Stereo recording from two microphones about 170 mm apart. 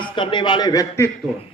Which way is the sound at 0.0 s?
30° left (ahead or behind).